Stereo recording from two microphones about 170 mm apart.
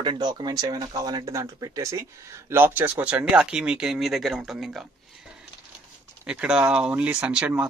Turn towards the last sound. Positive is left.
turn(degrees=-10)  # may be behind; listen again after turning